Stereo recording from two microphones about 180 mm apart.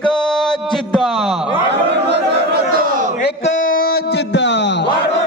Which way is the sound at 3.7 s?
55° left (ahead or behind).